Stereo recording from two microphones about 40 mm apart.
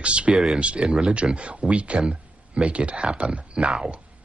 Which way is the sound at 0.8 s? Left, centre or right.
Centre.